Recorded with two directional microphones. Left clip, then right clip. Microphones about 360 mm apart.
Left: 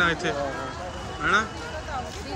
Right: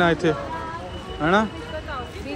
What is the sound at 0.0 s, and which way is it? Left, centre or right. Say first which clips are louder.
Speech: right 3 dB; centre.